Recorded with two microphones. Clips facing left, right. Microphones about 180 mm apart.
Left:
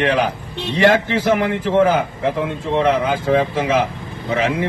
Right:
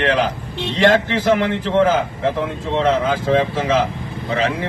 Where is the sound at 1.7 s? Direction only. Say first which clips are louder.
Left 1 dB; 15° left (ahead or behind).